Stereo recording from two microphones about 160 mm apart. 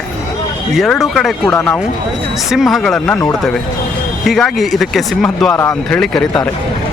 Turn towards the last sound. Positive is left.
turn(degrees=5)  # may be behind; listen again after turning